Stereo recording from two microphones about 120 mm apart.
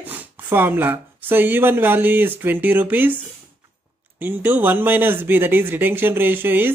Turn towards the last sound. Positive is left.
turn(degrees=-15)  # may be behind; listen again after turning